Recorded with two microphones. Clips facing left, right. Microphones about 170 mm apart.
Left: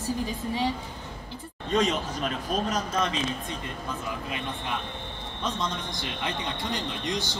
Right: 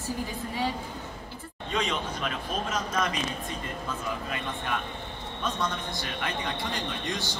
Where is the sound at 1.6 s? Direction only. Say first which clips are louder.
Left 6 dB; 40° left (ahead or behind).